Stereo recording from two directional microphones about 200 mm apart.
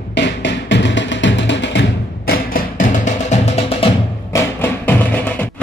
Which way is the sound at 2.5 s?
40° left (ahead or behind).